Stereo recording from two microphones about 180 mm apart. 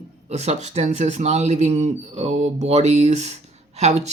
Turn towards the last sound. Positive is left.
turn(degrees=-40)  # may be behind; listen again after turning